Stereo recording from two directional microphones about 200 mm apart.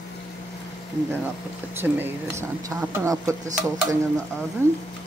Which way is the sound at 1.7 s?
10° right (ahead or behind).